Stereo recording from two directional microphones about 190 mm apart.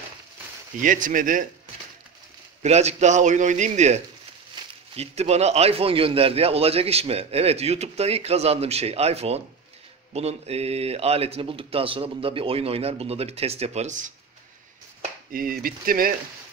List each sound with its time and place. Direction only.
0.7 s speech: 45° right (ahead or behind)
2.6 s a man's voice: 35° right (ahead or behind)
15.3 s speech: 50° right (ahead or behind)